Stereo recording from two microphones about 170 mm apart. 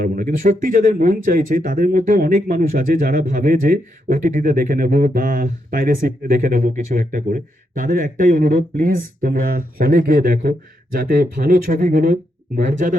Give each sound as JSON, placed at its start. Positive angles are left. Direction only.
{"t": 0.0, "sound": "speech", "side_deg": -50}